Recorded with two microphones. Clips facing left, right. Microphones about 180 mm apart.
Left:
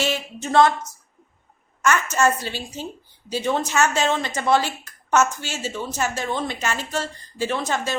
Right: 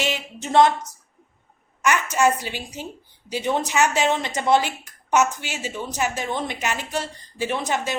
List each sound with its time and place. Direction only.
0.0 s speech: 15° right (ahead or behind)
1.8 s a woman's voice: 15° right (ahead or behind)